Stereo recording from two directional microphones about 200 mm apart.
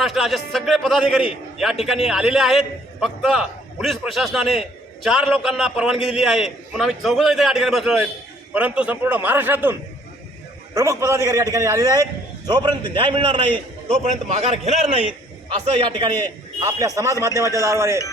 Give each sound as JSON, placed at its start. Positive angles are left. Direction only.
{"t": 0.0, "sound": "a man's voice", "side_deg": 0}
{"t": 10.8, "sound": "a man's voice", "side_deg": -15}